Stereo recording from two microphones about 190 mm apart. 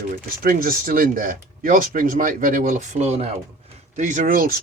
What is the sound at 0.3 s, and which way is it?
Speech, 45° right (ahead or behind).